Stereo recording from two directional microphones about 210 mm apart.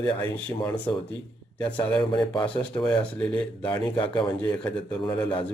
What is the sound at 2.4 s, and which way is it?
A man's voice, 5° left (ahead or behind).